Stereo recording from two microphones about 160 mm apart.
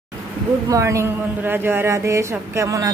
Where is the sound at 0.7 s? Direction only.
20° right (ahead or behind).